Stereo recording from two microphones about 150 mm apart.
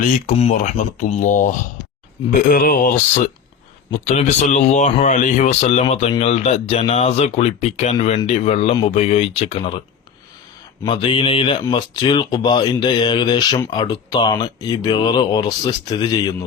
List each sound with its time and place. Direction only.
0.5 s speech: 60° left (ahead or behind)
2.3 s a man's voice: 75° left (ahead or behind)
4.0 s speech: 50° left (ahead or behind)
10.8 s speech: 35° left (ahead or behind)